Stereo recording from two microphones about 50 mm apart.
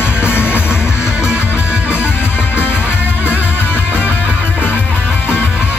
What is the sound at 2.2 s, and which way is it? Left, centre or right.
Music, left.